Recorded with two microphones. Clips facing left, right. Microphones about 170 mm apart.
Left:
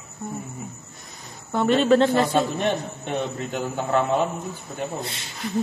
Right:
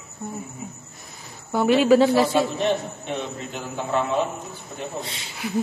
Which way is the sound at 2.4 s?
50° left (ahead or behind).